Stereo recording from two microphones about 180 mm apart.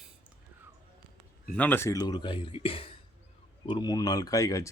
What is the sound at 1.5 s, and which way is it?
Speech, 10° left (ahead or behind).